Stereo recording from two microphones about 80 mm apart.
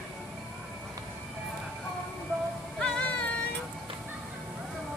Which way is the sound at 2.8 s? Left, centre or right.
Centre.